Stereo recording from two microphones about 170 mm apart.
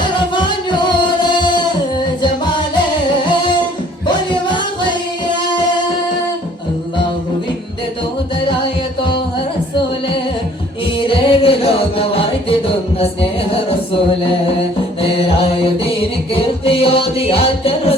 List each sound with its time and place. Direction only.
0.3 s music: 25° left (ahead or behind)
4.0 s music: 30° left (ahead or behind)
10.9 s music: 30° left (ahead or behind)
15.0 s music: 35° left (ahead or behind)